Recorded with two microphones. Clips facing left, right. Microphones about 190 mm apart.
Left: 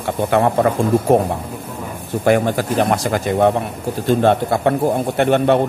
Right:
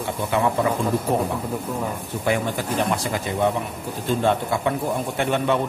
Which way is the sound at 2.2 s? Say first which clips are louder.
Left 8 dB; 70° left (ahead or behind).